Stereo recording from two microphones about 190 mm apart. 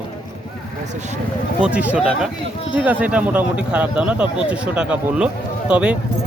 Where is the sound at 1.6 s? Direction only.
5° right (ahead or behind).